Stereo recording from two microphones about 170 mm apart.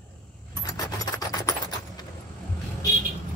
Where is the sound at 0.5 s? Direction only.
20° left (ahead or behind).